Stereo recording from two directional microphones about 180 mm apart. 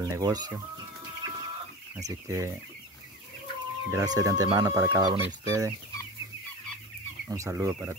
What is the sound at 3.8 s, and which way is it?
Speech, 20° right (ahead or behind).